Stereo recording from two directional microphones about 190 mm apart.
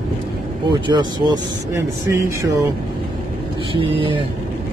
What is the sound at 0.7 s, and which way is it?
Speech, 25° right (ahead or behind).